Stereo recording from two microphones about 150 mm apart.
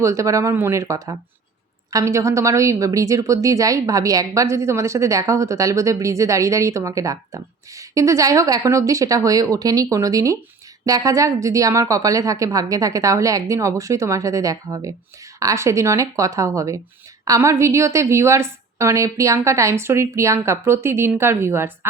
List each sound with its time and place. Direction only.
0.0 s a woman's voice: 20° right (ahead or behind)